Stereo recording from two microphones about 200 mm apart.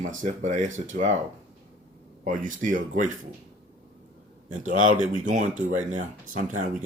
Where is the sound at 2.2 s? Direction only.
40° right (ahead or behind).